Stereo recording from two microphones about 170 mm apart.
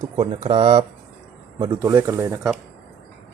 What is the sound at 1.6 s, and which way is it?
Speech, 25° right (ahead or behind).